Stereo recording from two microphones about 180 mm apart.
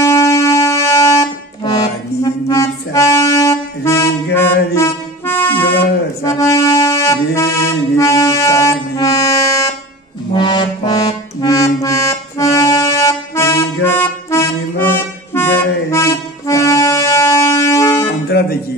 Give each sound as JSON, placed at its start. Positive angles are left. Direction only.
{"t": 0.0, "sound": "music", "side_deg": 15}
{"t": 18.3, "sound": "music", "side_deg": 65}